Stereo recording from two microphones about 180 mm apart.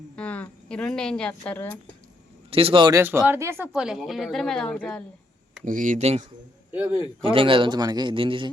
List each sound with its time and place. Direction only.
0.2 s speech: 10° left (ahead or behind)
2.5 s a man's voice: 30° right (ahead or behind)
3.0 s speech: 10° right (ahead or behind)
3.7 s a woman's voice: centre (ahead or behind)
5.6 s speech: 45° right (ahead or behind)
6.7 s speech: 10° right (ahead or behind)
7.3 s a man's voice: 30° right (ahead or behind)